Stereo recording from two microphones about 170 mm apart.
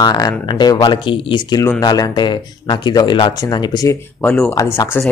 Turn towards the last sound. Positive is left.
turn(degrees=15)  # may be behind; listen again after turning